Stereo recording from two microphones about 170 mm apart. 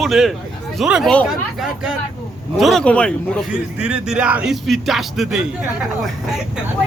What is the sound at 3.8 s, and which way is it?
Speech, 5° right (ahead or behind).